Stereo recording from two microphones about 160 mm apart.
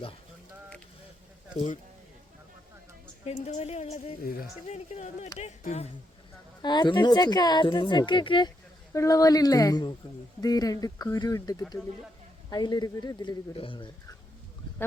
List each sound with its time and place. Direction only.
1.5 s speech: 50° left (ahead or behind)
3.2 s a woman's voice: 45° left (ahead or behind)
4.2 s speech: 65° left (ahead or behind)
4.7 s speech: 45° left (ahead or behind)
6.6 s speech: 30° left (ahead or behind)
8.9 s a woman's voice: 20° left (ahead or behind)